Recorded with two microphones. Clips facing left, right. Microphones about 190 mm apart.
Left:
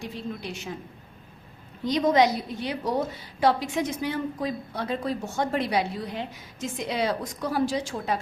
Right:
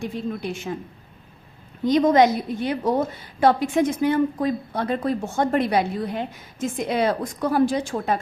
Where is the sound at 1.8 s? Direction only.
50° right (ahead or behind).